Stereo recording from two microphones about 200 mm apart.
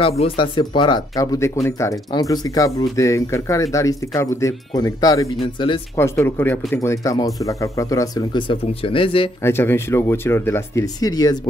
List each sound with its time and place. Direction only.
0.2 s speech: 25° left (ahead or behind)
9.4 s speech: 10° left (ahead or behind)